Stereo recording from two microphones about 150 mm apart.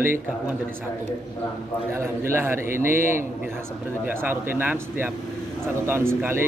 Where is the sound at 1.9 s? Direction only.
15° right (ahead or behind).